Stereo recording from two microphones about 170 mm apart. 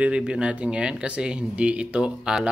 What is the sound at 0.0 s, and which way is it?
Speech, 5° right (ahead or behind).